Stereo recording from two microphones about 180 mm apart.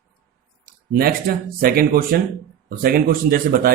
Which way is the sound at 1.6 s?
55° right (ahead or behind).